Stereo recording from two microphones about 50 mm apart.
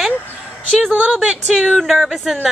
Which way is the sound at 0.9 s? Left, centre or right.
Centre.